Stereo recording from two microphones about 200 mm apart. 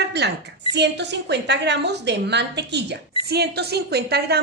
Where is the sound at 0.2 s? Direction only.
60° right (ahead or behind).